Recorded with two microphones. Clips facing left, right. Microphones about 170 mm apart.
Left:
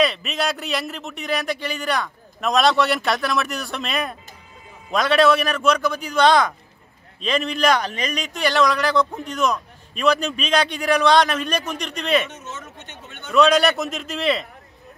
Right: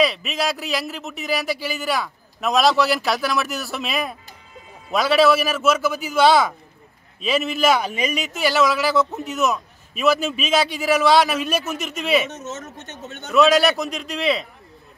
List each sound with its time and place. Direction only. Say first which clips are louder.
0.0 s a man's voice: even; centre (ahead or behind)
12.3 s speech: right 4 dB; 45° right (ahead or behind)
13.3 s a man's voice: even; centre (ahead or behind)